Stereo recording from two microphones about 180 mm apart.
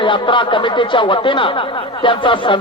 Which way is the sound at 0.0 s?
25° left (ahead or behind).